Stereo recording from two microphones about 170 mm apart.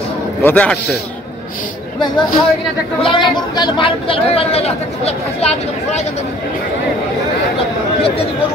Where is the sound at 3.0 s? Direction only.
30° left (ahead or behind).